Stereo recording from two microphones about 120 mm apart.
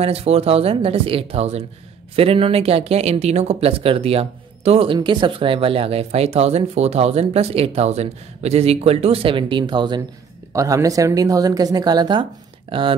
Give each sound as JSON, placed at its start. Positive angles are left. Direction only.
{"t": 0.0, "sound": "speech", "side_deg": -55}
{"t": 4.9, "sound": "speech", "side_deg": -40}
{"t": 10.5, "sound": "speech", "side_deg": -30}